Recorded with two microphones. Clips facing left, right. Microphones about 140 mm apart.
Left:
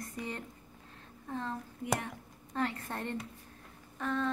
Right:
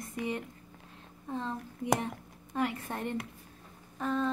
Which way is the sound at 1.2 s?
15° right (ahead or behind).